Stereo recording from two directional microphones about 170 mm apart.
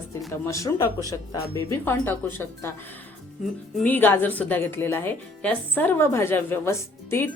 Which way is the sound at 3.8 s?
10° left (ahead or behind).